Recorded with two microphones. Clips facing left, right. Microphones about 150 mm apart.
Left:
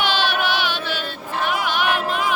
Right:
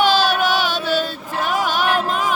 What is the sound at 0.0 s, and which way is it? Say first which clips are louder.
Music: right 5 dB; 40° right (ahead or behind).